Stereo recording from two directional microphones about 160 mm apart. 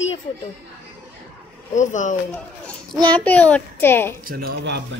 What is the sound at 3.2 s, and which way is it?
Speech, 10° left (ahead or behind).